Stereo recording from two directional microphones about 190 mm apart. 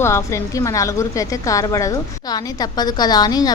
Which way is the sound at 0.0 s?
15° left (ahead or behind).